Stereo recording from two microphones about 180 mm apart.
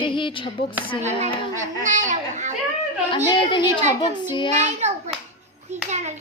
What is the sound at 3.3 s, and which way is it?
A woman's voice, 25° left (ahead or behind).